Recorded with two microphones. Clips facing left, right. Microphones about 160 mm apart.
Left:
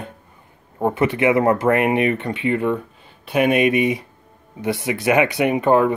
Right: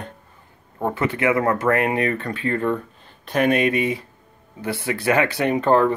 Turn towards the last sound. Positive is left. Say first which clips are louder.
# left 2 dB
turn(degrees=15)  # may be behind; listen again after turning